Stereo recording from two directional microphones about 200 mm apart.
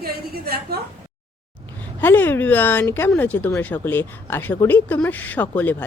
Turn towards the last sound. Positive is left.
turn(degrees=10)  # may be behind; listen again after turning